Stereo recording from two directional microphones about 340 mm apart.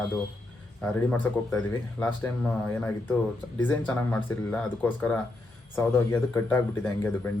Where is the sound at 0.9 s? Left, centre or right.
Centre.